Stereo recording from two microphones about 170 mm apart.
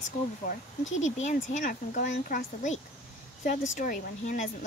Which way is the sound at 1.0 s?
45° left (ahead or behind).